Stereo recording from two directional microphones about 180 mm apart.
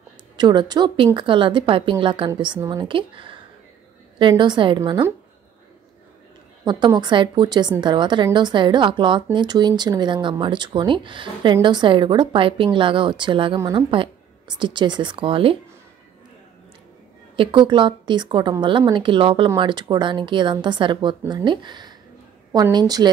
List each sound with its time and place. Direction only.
0.4 s speech: 25° right (ahead or behind)
6.6 s speech: 25° right (ahead or behind)
17.4 s speech: 25° right (ahead or behind)